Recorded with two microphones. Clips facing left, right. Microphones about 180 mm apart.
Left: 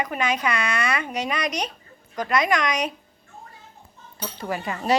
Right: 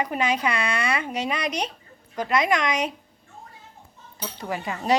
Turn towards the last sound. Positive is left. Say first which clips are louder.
# left 1 dB
turn(degrees=-15)  # may be behind; listen again after turning